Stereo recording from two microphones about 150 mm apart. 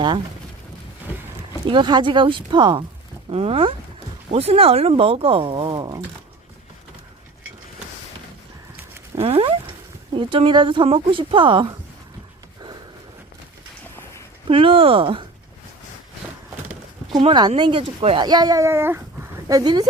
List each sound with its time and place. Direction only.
1.6 s speech: 30° right (ahead or behind)
3.2 s speech: 40° right (ahead or behind)
9.1 s a sound: 40° right (ahead or behind)
10.2 s speech: 35° right (ahead or behind)
14.4 s speech: 35° right (ahead or behind)
17.2 s speech: 30° right (ahead or behind)